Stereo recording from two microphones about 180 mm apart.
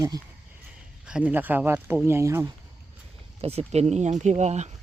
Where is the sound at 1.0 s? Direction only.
5° right (ahead or behind).